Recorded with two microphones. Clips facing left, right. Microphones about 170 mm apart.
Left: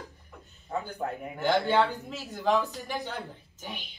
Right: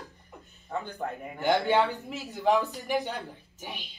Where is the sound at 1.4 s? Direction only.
15° right (ahead or behind).